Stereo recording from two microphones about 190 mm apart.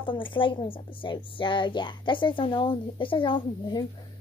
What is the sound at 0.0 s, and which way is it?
A woman's voice, 25° left (ahead or behind).